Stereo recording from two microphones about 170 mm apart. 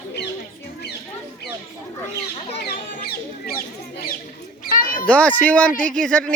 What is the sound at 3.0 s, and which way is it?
Speech, 65° left (ahead or behind).